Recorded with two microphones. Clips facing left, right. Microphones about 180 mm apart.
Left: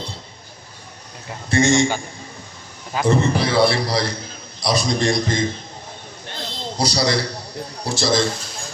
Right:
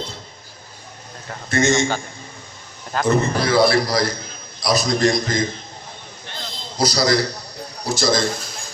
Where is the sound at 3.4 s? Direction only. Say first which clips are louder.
Right 1 dB; 30° left (ahead or behind).